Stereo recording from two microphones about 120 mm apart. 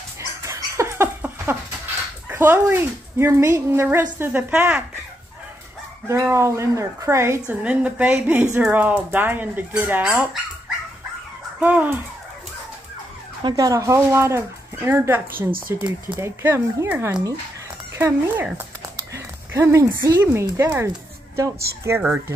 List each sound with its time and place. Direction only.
0.4 s dog: 25° right (ahead or behind)
2.2 s speech: 15° right (ahead or behind)
6.0 s speech: 25° right (ahead or behind)
11.6 s speech: 15° right (ahead or behind)
13.4 s speech: 35° right (ahead or behind)